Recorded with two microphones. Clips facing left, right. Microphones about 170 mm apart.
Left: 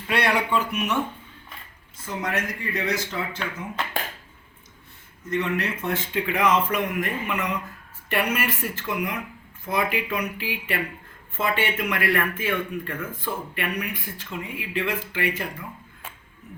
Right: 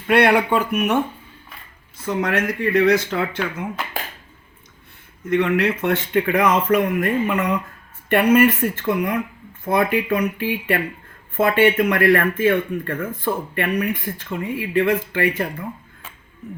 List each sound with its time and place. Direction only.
0.1 s speech: 55° right (ahead or behind)
2.0 s speech: 65° right (ahead or behind)
5.3 s speech: 65° right (ahead or behind)